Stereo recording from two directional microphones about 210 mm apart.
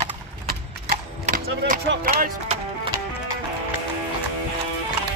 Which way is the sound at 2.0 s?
40° right (ahead or behind).